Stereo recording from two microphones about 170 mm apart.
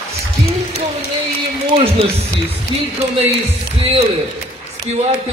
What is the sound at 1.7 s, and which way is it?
A man's voice, 35° right (ahead or behind).